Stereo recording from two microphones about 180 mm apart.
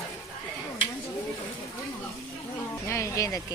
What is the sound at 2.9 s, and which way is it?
Speech, 15° left (ahead or behind).